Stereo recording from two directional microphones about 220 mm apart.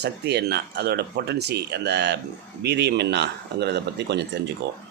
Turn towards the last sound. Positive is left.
turn(degrees=-50)  # may be behind; listen again after turning